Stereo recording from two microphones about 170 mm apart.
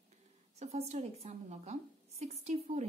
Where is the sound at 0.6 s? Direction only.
40° right (ahead or behind).